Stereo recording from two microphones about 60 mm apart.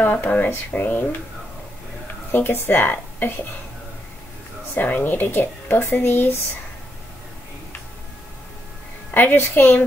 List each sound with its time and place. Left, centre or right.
0.0 s speech: left
2.3 s speech: left
4.7 s speech: left
9.1 s speech: left